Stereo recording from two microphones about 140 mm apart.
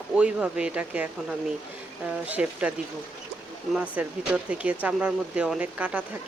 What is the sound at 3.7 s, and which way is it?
Speech, 10° right (ahead or behind).